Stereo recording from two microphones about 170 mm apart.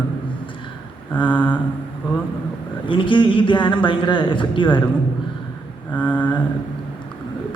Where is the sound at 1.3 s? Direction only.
10° left (ahead or behind).